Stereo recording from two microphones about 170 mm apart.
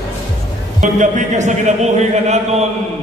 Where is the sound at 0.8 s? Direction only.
45° right (ahead or behind).